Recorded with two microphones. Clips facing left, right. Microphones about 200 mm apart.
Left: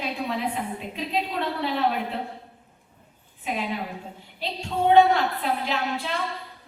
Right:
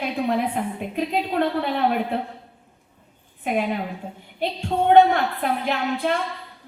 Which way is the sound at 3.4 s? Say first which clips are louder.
Right 5 dB; 55° right (ahead or behind).